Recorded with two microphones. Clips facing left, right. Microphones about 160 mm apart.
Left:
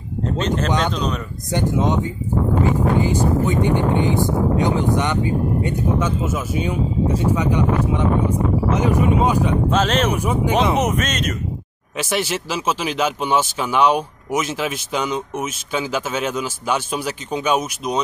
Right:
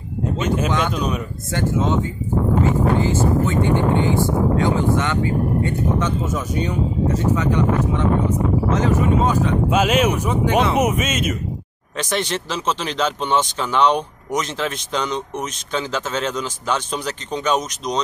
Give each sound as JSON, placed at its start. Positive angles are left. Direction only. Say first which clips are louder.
{"t": 0.2, "sound": "speech", "louder": "even", "side_deg": -10}
{"t": 1.5, "sound": "speech", "louder": "left 1 dB", "side_deg": 15}
{"t": 3.0, "sound": "speech", "louder": "even", "side_deg": 15}
{"t": 9.7, "sound": "speech", "louder": "right 1 dB", "side_deg": -10}
{"t": 10.1, "sound": "speech", "louder": "even", "side_deg": 10}
{"t": 10.8, "sound": "speech", "louder": "right 1 dB", "side_deg": -10}
{"t": 12.0, "sound": "speech", "louder": "left 1 dB", "side_deg": 5}